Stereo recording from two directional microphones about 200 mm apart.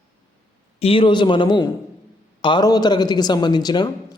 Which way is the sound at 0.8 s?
30° left (ahead or behind).